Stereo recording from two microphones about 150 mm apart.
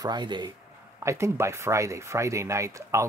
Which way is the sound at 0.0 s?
30° right (ahead or behind).